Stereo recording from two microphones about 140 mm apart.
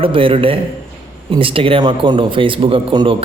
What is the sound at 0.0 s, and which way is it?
A man's voice, 40° right (ahead or behind).